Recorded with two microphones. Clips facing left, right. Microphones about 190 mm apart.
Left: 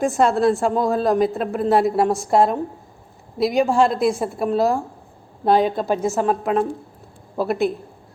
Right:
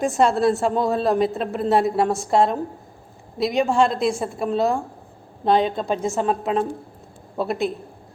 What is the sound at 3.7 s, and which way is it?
A woman's voice, 5° left (ahead or behind).